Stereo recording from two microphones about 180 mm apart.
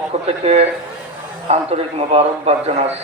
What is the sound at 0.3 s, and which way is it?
A man's voice, 35° right (ahead or behind).